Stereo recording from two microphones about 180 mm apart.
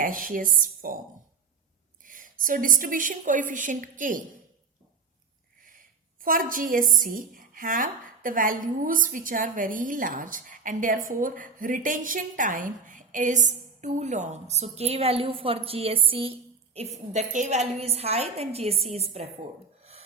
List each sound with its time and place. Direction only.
0.0 s a woman's voice: 50° right (ahead or behind)
2.0 s a woman's voice: 50° right (ahead or behind)
5.6 s a woman's voice: 50° right (ahead or behind); by 19.3 s 35° right (ahead or behind)
19.8 s a sound: 35° right (ahead or behind)